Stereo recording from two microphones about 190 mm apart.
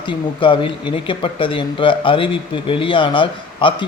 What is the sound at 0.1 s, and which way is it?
Speech, 25° left (ahead or behind).